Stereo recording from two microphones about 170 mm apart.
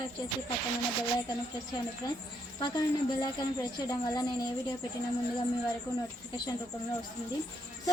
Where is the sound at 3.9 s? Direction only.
20° left (ahead or behind).